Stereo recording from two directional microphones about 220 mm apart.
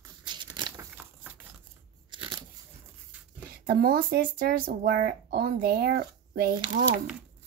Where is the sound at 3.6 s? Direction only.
45° right (ahead or behind).